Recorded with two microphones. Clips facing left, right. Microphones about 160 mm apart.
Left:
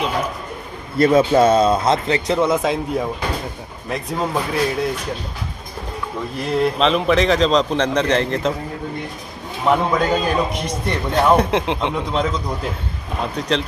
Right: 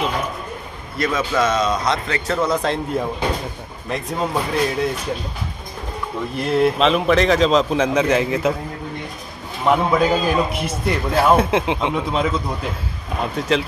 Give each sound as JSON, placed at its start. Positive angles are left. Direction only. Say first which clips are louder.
{"t": 0.9, "sound": "speech", "louder": "left 7 dB", "side_deg": 30}
{"t": 2.4, "sound": "a man's voice", "louder": "left 2 dB", "side_deg": 5}
{"t": 6.4, "sound": "a man's voice", "louder": "right 1 dB", "side_deg": 0}
{"t": 9.7, "sound": "a man's voice", "louder": "right 1 dB", "side_deg": 0}